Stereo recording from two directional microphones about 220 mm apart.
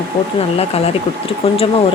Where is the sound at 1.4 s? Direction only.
25° left (ahead or behind).